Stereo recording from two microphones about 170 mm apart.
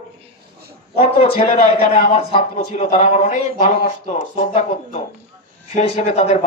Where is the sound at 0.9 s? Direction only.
35° left (ahead or behind).